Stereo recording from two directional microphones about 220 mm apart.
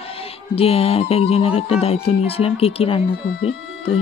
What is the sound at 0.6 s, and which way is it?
Speech, 25° left (ahead or behind).